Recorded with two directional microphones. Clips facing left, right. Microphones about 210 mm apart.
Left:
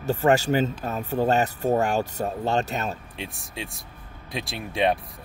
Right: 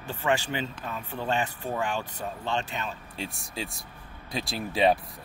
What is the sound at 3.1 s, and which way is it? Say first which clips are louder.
Speech: even; centre (ahead or behind).